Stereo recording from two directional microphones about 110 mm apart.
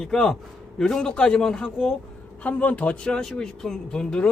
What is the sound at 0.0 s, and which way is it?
A man's voice, 5° left (ahead or behind).